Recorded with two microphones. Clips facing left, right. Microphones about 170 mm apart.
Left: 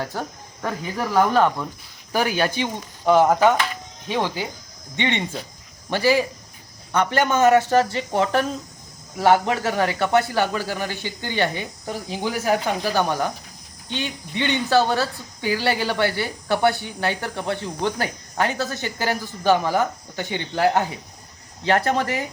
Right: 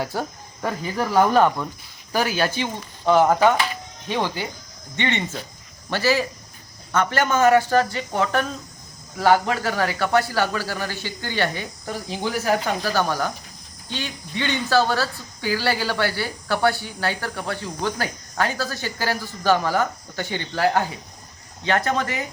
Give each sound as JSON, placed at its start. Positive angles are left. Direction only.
{"t": 0.0, "sound": "speech", "side_deg": -10}
{"t": 2.1, "sound": "speech", "side_deg": 15}
{"t": 21.6, "sound": "speech", "side_deg": 30}